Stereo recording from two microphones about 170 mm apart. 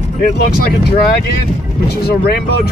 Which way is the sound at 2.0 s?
65° left (ahead or behind).